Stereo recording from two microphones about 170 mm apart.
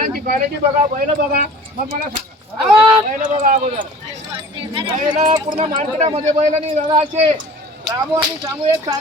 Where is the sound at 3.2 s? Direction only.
50° right (ahead or behind).